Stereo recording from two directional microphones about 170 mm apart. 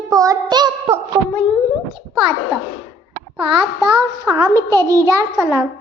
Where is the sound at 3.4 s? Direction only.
30° right (ahead or behind).